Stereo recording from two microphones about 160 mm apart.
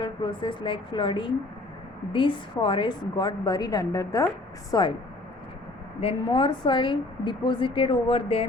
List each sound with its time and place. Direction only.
0.0 s a woman's voice: 30° left (ahead or behind)
6.0 s a woman's voice: 35° left (ahead or behind)